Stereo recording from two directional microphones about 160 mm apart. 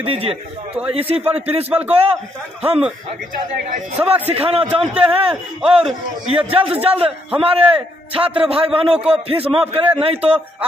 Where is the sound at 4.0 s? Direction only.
20° right (ahead or behind).